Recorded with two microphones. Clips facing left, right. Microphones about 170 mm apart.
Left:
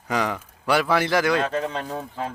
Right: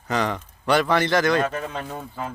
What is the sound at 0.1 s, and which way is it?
A man's voice, 10° left (ahead or behind).